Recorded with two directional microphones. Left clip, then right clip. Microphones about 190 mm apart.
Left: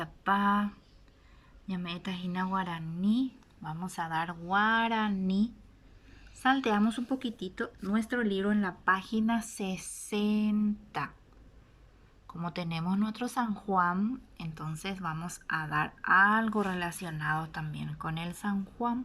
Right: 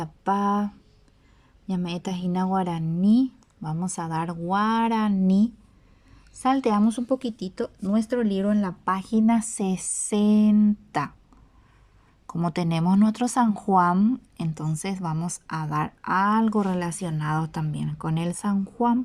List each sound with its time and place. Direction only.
0.0 s speech: 30° right (ahead or behind)
1.7 s speech: 35° right (ahead or behind)
12.4 s speech: 45° right (ahead or behind)